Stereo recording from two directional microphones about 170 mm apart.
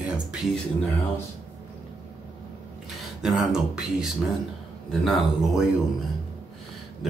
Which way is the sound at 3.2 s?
Centre (ahead or behind).